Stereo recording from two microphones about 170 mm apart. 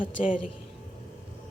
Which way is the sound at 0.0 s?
30° left (ahead or behind).